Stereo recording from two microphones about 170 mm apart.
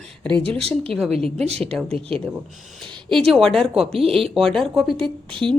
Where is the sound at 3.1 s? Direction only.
30° right (ahead or behind).